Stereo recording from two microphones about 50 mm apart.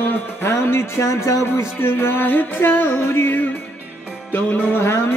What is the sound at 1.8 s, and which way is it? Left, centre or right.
Music, left.